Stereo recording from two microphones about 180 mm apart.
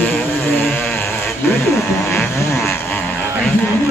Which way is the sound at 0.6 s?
10° left (ahead or behind).